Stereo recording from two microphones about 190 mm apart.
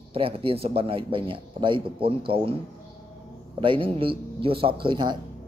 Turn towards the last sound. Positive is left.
turn(degrees=-25)  # may be behind; listen again after turning